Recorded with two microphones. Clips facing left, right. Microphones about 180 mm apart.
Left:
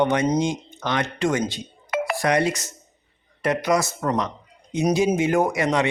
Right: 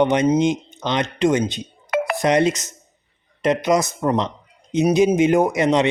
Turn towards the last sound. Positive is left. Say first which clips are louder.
# right 4 dB
turn(degrees=-20)  # may be behind; listen again after turning